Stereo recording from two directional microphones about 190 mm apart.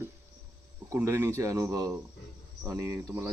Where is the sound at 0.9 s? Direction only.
15° right (ahead or behind).